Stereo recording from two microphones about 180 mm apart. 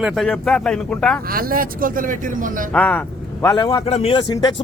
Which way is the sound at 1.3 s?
55° right (ahead or behind).